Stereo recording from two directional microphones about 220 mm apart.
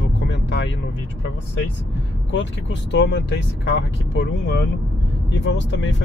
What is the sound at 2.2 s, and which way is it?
Speech, 55° left (ahead or behind).